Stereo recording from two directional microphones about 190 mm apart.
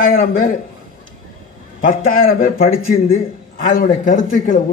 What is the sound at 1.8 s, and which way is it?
A man's voice, 50° left (ahead or behind).